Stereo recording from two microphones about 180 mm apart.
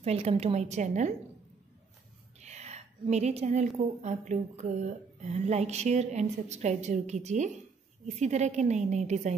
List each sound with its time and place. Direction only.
0.0 s a woman's voice: 35° right (ahead or behind)
2.4 s a woman's voice: 40° right (ahead or behind)